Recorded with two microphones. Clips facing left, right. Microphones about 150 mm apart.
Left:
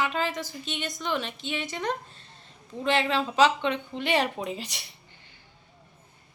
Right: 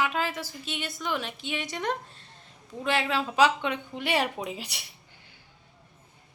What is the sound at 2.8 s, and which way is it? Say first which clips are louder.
Speech: left 2 dB; 5° right (ahead or behind).